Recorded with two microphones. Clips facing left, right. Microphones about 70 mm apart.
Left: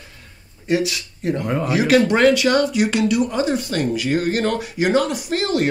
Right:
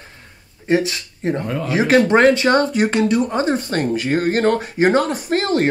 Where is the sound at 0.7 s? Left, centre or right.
Right.